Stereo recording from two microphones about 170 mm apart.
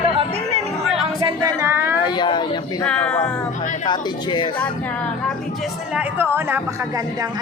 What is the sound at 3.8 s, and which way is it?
Speech, 25° left (ahead or behind).